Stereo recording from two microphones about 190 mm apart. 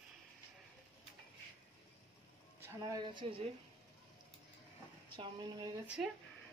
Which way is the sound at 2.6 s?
10° right (ahead or behind).